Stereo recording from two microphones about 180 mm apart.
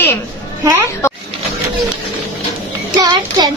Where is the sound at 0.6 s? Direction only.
15° right (ahead or behind).